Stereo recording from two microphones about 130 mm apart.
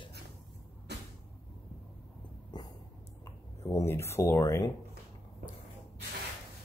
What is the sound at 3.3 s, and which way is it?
Speech, 20° left (ahead or behind).